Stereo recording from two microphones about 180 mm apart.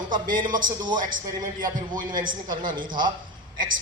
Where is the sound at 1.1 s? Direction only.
50° right (ahead or behind).